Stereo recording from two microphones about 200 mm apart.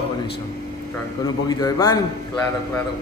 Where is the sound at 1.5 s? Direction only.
15° left (ahead or behind).